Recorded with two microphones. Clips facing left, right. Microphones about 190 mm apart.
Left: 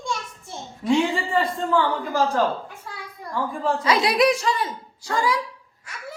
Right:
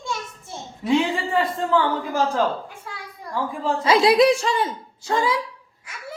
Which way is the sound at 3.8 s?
25° right (ahead or behind).